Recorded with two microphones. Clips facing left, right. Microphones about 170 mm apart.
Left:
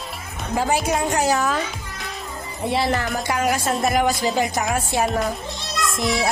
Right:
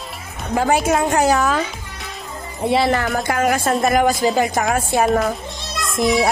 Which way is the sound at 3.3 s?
50° right (ahead or behind).